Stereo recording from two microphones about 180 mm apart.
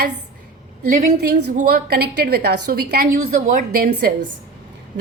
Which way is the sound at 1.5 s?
60° right (ahead or behind).